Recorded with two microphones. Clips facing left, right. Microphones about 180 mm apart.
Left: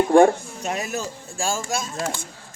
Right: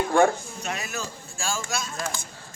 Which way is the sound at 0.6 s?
45° left (ahead or behind).